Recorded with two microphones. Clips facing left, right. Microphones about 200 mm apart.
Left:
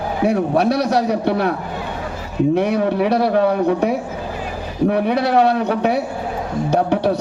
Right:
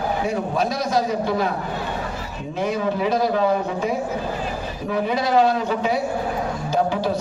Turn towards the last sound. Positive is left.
turn(degrees=65)  # may be behind; listen again after turning